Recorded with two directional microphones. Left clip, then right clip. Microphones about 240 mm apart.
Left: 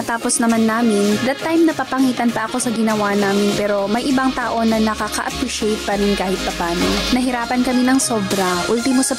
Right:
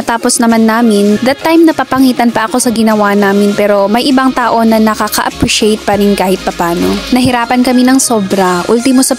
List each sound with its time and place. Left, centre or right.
0.4 s speech: right
7.2 s speech: right